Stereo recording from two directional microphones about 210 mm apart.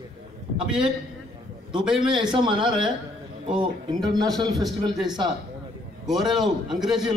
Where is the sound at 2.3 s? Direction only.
25° right (ahead or behind).